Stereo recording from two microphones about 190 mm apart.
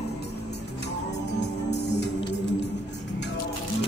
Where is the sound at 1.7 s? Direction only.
65° left (ahead or behind).